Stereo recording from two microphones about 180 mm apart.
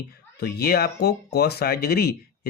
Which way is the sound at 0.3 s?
60° left (ahead or behind).